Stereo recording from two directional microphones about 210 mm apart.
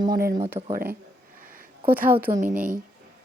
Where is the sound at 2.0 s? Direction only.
45° right (ahead or behind).